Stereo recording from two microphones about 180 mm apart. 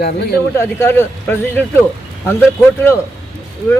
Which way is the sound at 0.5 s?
15° left (ahead or behind).